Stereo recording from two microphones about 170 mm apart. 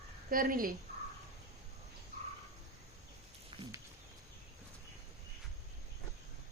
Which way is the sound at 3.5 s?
30° right (ahead or behind).